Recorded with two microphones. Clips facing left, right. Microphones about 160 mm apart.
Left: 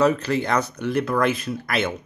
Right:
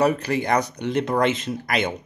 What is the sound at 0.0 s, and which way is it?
Speech, 15° right (ahead or behind).